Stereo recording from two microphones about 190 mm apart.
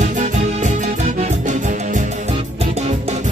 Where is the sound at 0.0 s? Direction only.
40° right (ahead or behind).